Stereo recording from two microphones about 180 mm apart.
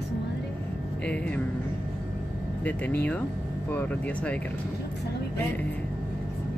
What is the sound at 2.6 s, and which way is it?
Speech, 10° left (ahead or behind).